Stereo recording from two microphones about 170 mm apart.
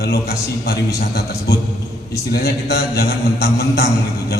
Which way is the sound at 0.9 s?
70° left (ahead or behind).